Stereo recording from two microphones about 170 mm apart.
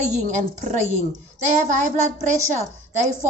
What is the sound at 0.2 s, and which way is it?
A woman's voice, 45° right (ahead or behind).